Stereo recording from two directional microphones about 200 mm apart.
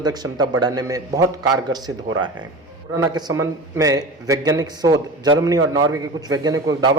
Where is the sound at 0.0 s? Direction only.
20° right (ahead or behind).